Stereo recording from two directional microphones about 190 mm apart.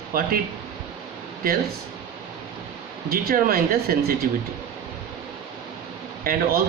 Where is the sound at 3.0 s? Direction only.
50° right (ahead or behind).